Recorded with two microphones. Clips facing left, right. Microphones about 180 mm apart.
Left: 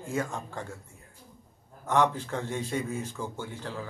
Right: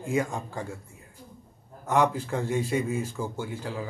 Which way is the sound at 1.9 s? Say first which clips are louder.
Right 2 dB; 10° right (ahead or behind).